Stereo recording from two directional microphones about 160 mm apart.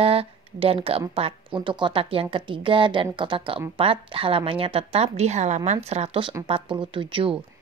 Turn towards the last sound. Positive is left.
turn(degrees=-35)  # may be behind; listen again after turning